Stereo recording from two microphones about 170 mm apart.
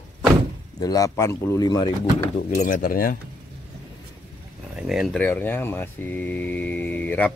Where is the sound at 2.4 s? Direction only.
50° left (ahead or behind).